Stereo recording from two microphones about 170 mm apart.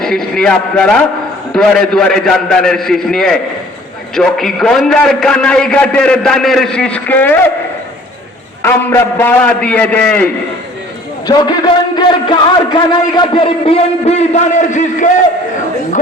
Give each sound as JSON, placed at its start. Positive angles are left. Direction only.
{"t": 0.0, "sound": "a man's voice", "side_deg": 5}
{"t": 8.6, "sound": "a man's voice", "side_deg": 15}
{"t": 11.3, "sound": "a man's voice", "side_deg": 25}